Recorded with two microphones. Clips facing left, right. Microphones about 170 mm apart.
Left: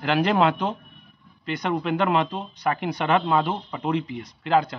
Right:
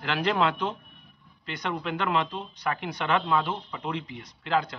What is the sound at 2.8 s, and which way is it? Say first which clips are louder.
Speech: left 6 dB; 10° left (ahead or behind).